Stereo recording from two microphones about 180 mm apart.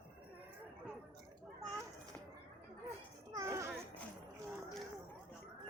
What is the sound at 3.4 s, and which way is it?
Music, 15° right (ahead or behind).